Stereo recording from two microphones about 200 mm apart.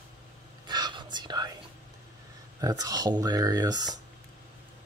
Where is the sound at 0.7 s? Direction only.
20° right (ahead or behind).